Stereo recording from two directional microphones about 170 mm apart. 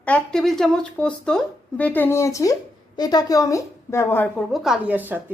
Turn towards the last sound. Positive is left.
turn(degrees=-10)  # may be behind; listen again after turning